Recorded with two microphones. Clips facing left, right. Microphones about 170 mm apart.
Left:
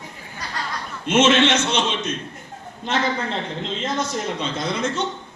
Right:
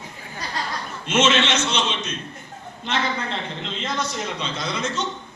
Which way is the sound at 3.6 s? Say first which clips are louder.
Left 3 dB; 45° left (ahead or behind).